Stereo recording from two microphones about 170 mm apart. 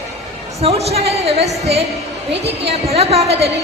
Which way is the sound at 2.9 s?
35° right (ahead or behind).